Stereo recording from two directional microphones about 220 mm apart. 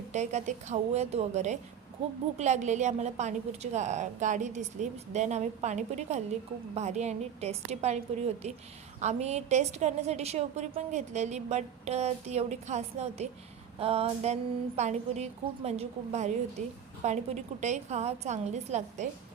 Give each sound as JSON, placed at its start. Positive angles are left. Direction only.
{"t": 0.1, "sound": "a woman's voice", "side_deg": -30}